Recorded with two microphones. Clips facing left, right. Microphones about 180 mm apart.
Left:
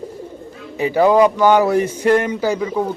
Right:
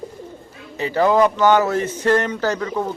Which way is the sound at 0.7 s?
15° left (ahead or behind).